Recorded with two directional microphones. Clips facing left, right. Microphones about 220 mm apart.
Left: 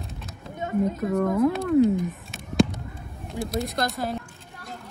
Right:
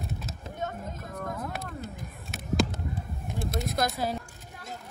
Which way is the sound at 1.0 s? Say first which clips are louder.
Left 15 dB; 75° left (ahead or behind).